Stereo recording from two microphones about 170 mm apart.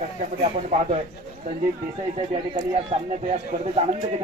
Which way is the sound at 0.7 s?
45° right (ahead or behind).